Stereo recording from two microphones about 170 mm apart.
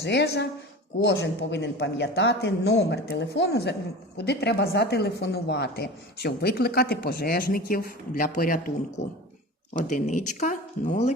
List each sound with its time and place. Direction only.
0.0 s a woman's voice: 85° left; by 8.7 s 55° left (ahead or behind)
9.8 s speech: 50° left (ahead or behind)